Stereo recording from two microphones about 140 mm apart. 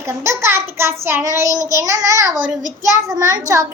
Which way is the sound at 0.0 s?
20° right (ahead or behind).